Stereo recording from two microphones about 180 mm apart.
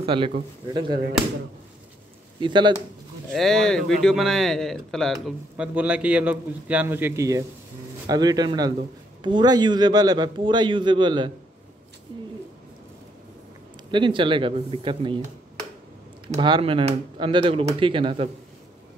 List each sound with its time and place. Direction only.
0.0 s speech: 30° right (ahead or behind)
2.4 s a man's voice: 25° right (ahead or behind)
3.3 s a man's voice: centre (ahead or behind); by 11.3 s 25° right (ahead or behind)
13.9 s a man's voice: 25° right (ahead or behind)
16.3 s a man's voice: 25° right (ahead or behind)